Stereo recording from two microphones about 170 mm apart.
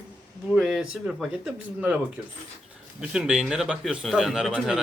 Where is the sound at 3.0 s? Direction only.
5° right (ahead or behind).